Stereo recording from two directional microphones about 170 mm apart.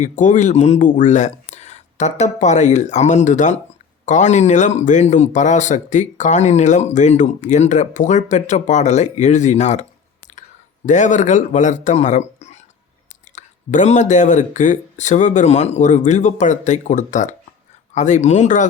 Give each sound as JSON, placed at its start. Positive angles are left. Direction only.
{"t": 0.0, "sound": "speech", "side_deg": 45}
{"t": 10.8, "sound": "speech", "side_deg": 45}